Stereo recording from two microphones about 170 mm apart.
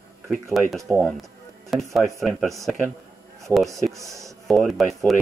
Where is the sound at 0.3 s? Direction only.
Centre (ahead or behind).